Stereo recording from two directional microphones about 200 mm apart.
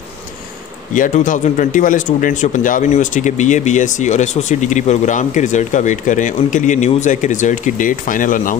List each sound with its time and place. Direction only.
0.9 s speech: 40° left (ahead or behind)